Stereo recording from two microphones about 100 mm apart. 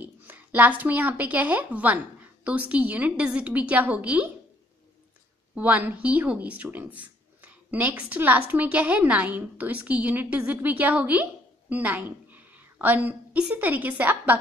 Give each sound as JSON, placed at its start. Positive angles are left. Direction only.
{"t": 0.0, "sound": "a woman's voice", "side_deg": -20}
{"t": 5.5, "sound": "a woman's voice", "side_deg": -15}